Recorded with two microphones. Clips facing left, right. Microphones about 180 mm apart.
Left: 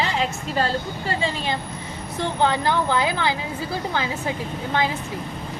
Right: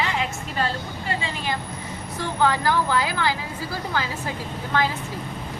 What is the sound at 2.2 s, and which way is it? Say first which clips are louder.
A woman's voice: left 1 dB; 25° left (ahead or behind).